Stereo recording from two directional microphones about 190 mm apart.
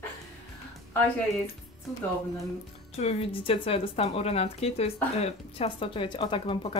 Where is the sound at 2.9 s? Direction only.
30° left (ahead or behind).